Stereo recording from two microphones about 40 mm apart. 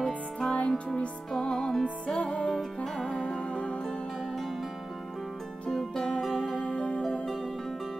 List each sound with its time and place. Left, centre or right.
0.0 s music: left
2.0 s music: left
2.5 s music: centre
3.3 s music: left
5.7 s music: centre; by 7.0 s left